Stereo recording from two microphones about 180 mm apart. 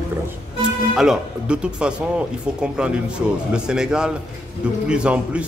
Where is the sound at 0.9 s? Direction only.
5° right (ahead or behind).